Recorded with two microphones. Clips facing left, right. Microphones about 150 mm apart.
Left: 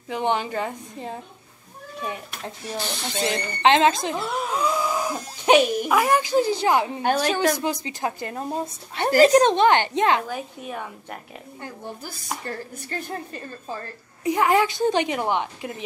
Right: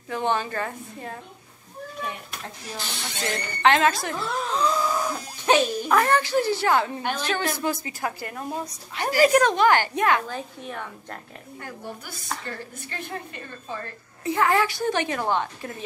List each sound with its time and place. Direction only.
0.1 s speech: 15° left (ahead or behind)
3.2 s a woman's voice: 20° left (ahead or behind)
10.2 s speech: 10° left (ahead or behind)
11.6 s a woman's voice: 35° left (ahead or behind)
14.2 s speech: 15° left (ahead or behind)